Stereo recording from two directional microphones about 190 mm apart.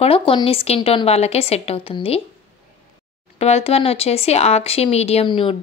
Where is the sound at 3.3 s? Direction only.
35° left (ahead or behind).